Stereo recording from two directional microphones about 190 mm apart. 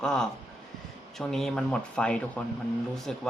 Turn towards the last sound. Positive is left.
turn(degrees=5)  # may be behind; listen again after turning